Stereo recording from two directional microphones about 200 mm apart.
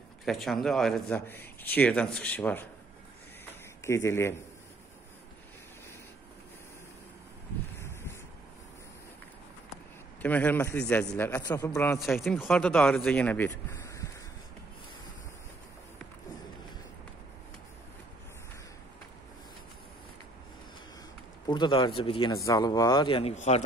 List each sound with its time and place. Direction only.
0.2 s speech: centre (ahead or behind)
3.8 s speech: 15° left (ahead or behind)
7.8 s wind noise: 15° left (ahead or behind)
10.2 s speech: 10° left (ahead or behind)
12.0 s speech: centre (ahead or behind)
21.5 s speech: 25° left (ahead or behind)